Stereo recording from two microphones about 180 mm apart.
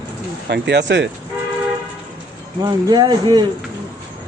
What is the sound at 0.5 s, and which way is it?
Speech, 70° right (ahead or behind).